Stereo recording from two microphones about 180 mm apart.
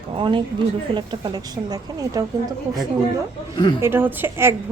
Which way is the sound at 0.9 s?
25° right (ahead or behind).